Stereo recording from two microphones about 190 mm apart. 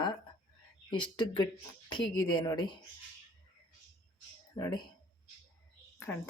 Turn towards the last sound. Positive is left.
turn(degrees=10)  # may be behind; listen again after turning